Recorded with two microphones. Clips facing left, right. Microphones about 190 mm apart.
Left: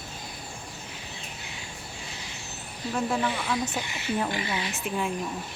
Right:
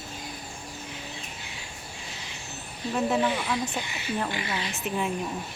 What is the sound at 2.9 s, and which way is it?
Speech, 5° right (ahead or behind).